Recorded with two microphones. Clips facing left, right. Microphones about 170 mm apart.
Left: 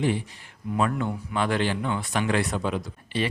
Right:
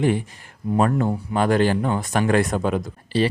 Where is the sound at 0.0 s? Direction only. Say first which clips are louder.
Right 5 dB; 50° right (ahead or behind).